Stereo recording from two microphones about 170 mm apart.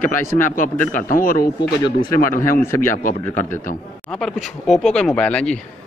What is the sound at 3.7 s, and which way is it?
Speech, 50° left (ahead or behind).